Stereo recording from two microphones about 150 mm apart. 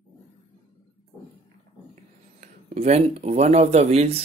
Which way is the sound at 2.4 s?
55° right (ahead or behind).